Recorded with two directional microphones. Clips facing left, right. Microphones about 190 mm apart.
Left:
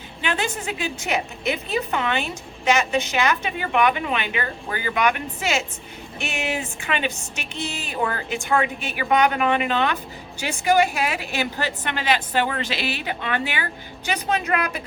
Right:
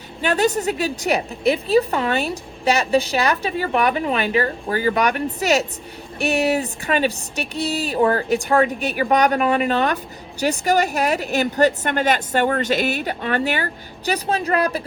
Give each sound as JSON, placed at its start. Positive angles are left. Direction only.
{"t": 0.2, "sound": "a woman's voice", "side_deg": -40}